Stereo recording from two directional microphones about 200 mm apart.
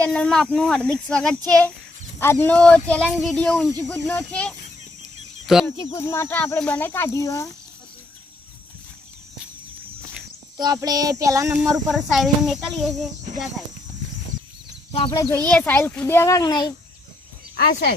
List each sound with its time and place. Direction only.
0.0 s speech: 5° left (ahead or behind)
5.7 s speech: 30° left (ahead or behind)
6.0 s speech: 15° left (ahead or behind)
10.6 s child singing: 20° right (ahead or behind)
11.7 s speech: centre (ahead or behind)
15.1 s speech: 15° left (ahead or behind)
17.6 s speech: 50° left (ahead or behind)